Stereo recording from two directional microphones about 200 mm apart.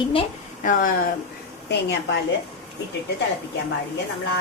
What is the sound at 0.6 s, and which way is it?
Speech, 40° left (ahead or behind).